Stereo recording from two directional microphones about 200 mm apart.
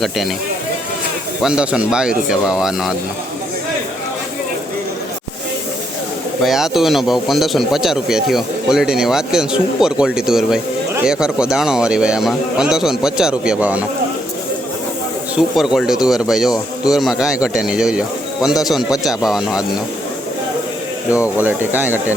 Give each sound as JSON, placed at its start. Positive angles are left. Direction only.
{"t": 1.4, "sound": "speech", "side_deg": -5}
{"t": 6.4, "sound": "speech", "side_deg": 0}
{"t": 15.4, "sound": "speech", "side_deg": -5}
{"t": 21.4, "sound": "speech", "side_deg": -10}